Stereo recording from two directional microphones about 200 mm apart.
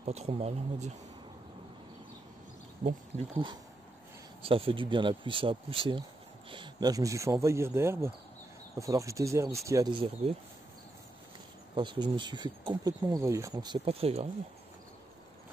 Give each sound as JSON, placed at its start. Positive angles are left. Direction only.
{"t": 0.0, "sound": "speech", "side_deg": -35}
{"t": 2.8, "sound": "speech", "side_deg": -35}
{"t": 11.7, "sound": "speech", "side_deg": -25}